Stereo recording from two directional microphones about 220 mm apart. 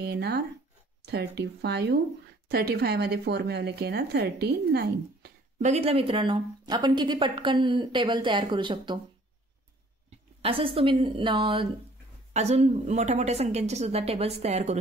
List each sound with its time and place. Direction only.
0.0 s speech: 50° right (ahead or behind)
5.6 s a woman's voice: 30° right (ahead or behind)
10.4 s a woman's voice: 25° right (ahead or behind)